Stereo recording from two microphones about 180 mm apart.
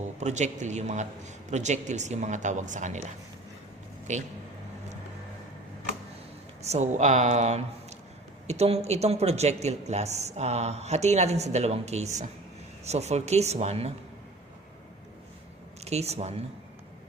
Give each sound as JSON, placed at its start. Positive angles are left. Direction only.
{"t": 0.0, "sound": "speech", "side_deg": -40}
{"t": 4.1, "sound": "speech", "side_deg": -40}
{"t": 6.7, "sound": "speech", "side_deg": -40}
{"t": 15.8, "sound": "speech", "side_deg": -35}